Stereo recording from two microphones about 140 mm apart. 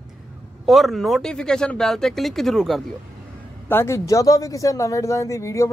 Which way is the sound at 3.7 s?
20° left (ahead or behind).